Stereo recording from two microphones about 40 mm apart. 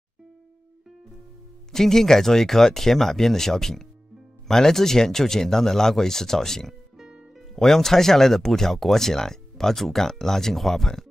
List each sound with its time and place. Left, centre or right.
1.7 s speech: centre